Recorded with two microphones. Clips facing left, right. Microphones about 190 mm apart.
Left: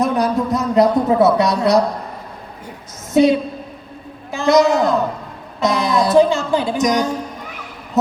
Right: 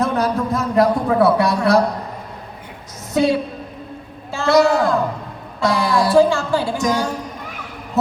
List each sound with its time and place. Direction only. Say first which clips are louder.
0.0 s speech: left 2 dB; 15° left (ahead or behind)
4.3 s a woman's voice: left 1 dB; 20° left (ahead or behind)